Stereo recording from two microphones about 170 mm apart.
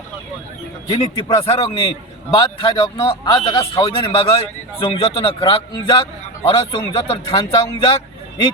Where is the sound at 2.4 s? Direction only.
30° left (ahead or behind).